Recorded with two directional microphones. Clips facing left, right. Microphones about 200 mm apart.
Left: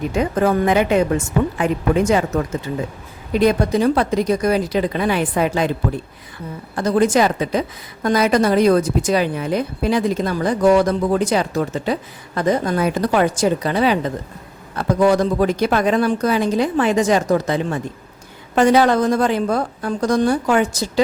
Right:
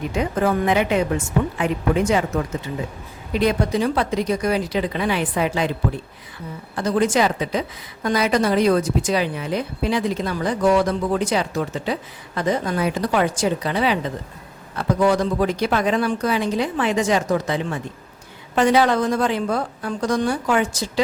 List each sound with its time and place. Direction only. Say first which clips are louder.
0.2 s a woman's voice: left 3 dB; 45° left (ahead or behind)
3.3 s a woman's voice: left 4 dB; 45° left (ahead or behind)
6.7 s a woman's voice: left 3 dB; 45° left (ahead or behind)